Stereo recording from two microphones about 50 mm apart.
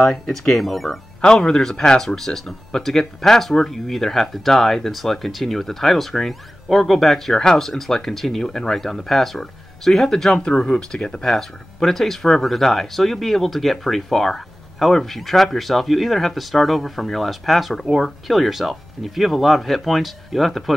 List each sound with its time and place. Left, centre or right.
0.3 s speech: centre
1.2 s speech: centre